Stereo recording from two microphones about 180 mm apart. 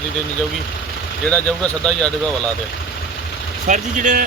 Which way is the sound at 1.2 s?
5° left (ahead or behind).